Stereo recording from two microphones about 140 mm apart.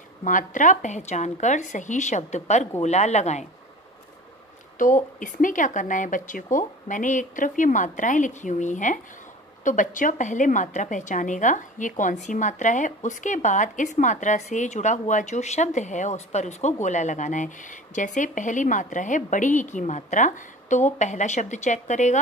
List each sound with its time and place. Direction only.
0.2 s a woman's voice: 70° left (ahead or behind)
4.7 s a woman's voice: 65° left (ahead or behind)